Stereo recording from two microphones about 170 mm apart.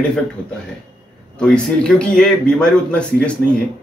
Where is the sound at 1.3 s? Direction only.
5° left (ahead or behind).